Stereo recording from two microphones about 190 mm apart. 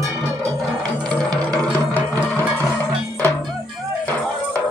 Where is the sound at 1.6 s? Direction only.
10° left (ahead or behind).